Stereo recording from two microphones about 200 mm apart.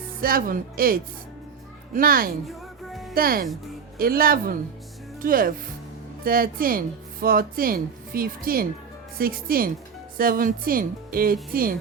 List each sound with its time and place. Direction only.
0.2 s speech: 45° right (ahead or behind)
2.5 s music: centre (ahead or behind)
3.2 s speech: 45° right (ahead or behind)